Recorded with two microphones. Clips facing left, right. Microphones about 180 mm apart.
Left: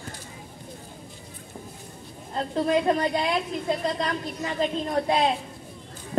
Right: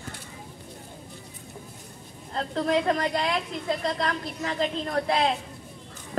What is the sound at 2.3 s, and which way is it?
A woman's voice, 15° left (ahead or behind).